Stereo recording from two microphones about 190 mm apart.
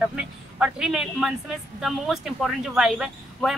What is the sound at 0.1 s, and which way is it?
A man's voice, 5° right (ahead or behind).